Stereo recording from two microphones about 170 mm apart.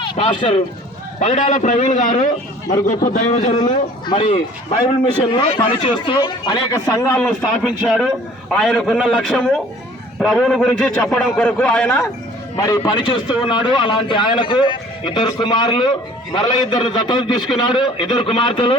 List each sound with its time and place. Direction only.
0.0 s a man's voice: 30° left (ahead or behind)
4.0 s speech: 30° left (ahead or behind)
5.3 s a man's voice: 30° left (ahead or behind); by 7.3 s 15° left (ahead or behind)
7.6 s a man's voice: 5° right (ahead or behind)
12.5 s a man's voice: 20° left (ahead or behind)